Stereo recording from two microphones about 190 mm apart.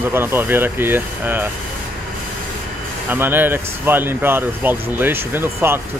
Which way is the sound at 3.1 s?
10° right (ahead or behind).